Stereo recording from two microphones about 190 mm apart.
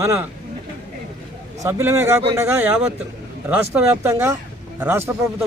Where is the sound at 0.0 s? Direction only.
15° right (ahead or behind).